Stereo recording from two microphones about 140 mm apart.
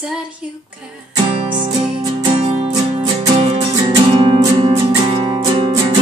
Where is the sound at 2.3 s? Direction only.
40° right (ahead or behind).